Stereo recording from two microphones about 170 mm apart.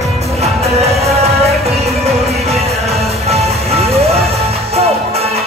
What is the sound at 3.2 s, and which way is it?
Music, 40° right (ahead or behind).